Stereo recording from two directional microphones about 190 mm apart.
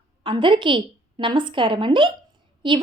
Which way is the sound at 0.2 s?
25° right (ahead or behind).